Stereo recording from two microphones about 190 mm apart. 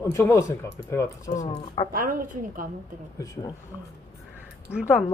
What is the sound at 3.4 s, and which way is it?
Speech, 20° left (ahead or behind).